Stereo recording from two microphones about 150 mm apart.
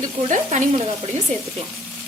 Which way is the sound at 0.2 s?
55° right (ahead or behind).